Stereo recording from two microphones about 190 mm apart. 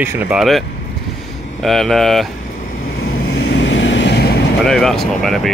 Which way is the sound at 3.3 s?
60° left (ahead or behind).